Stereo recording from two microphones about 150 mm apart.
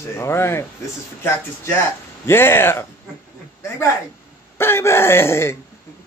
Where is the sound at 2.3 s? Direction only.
15° left (ahead or behind).